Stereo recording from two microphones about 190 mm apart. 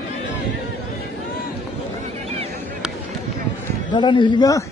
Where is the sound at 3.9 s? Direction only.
25° left (ahead or behind).